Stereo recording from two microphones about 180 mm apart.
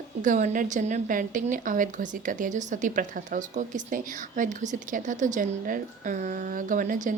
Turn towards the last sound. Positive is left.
turn(degrees=-45)  # may be behind; listen again after turning